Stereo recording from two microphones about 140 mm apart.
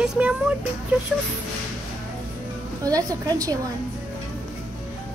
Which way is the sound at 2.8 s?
25° right (ahead or behind).